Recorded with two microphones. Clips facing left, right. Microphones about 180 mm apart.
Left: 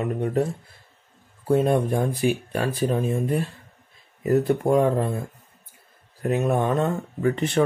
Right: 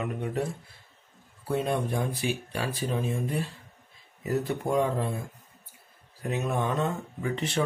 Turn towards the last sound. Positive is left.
turn(degrees=55)  # may be behind; listen again after turning